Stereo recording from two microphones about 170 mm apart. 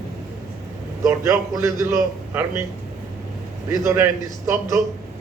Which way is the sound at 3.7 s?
15° right (ahead or behind).